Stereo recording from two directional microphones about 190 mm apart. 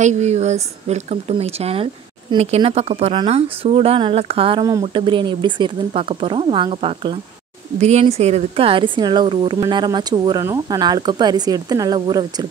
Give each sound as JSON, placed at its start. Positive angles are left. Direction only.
{"t": 0.0, "sound": "speech", "side_deg": -35}